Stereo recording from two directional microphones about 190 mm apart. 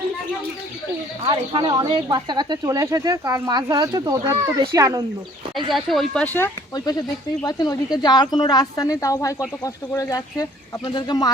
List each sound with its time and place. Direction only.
1.3 s speech: 20° right (ahead or behind)
5.7 s speech: centre (ahead or behind)
6.3 s a woman's voice: 15° left (ahead or behind)